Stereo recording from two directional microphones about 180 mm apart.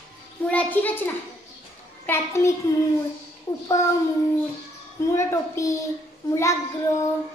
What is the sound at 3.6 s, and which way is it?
Child singing, 15° left (ahead or behind).